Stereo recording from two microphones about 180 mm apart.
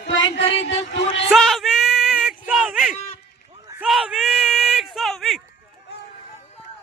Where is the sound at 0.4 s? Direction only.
35° left (ahead or behind).